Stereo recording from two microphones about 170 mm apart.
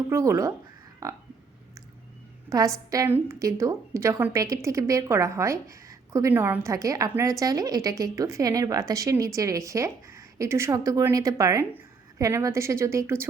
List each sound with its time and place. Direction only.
0.1 s a woman's voice: 20° right (ahead or behind)
2.5 s a woman's voice: 20° right (ahead or behind)